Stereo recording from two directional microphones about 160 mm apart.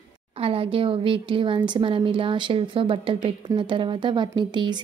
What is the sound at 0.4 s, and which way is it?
Speech, 35° right (ahead or behind).